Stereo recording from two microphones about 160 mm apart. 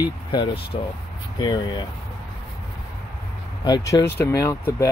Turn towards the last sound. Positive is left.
turn(degrees=20)  # may be behind; listen again after turning